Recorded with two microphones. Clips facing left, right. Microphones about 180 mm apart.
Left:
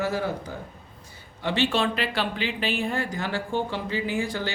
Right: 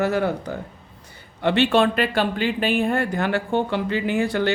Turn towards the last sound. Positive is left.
turn(degrees=-65)  # may be behind; listen again after turning